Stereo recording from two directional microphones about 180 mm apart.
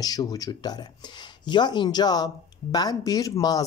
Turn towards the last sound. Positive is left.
turn(degrees=20)  # may be behind; listen again after turning